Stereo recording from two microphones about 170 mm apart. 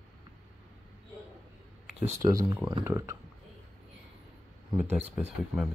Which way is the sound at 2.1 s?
20° right (ahead or behind).